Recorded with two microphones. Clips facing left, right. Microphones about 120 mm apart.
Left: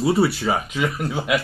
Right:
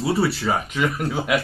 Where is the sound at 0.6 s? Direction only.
Centre (ahead or behind).